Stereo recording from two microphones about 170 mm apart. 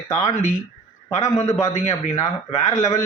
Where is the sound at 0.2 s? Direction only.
40° left (ahead or behind).